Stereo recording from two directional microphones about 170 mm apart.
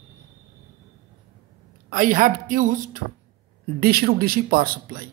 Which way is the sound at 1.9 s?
55° right (ahead or behind).